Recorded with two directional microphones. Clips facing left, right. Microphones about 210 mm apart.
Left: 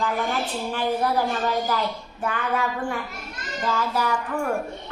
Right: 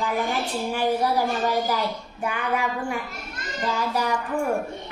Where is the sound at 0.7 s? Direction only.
10° right (ahead or behind).